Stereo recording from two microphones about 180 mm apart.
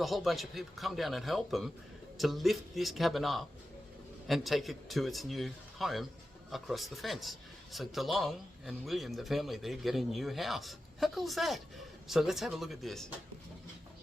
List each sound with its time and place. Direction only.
0.0 s a man's voice: centre (ahead or behind)